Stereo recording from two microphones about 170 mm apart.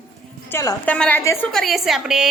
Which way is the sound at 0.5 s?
10° left (ahead or behind).